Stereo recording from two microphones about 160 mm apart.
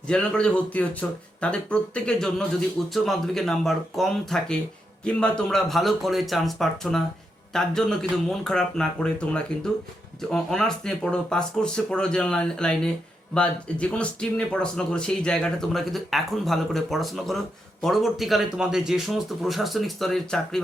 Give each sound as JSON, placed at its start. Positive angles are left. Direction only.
{"t": 0.1, "sound": "speech", "side_deg": 5}